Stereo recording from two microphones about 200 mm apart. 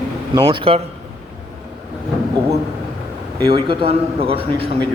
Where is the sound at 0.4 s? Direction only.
25° right (ahead or behind).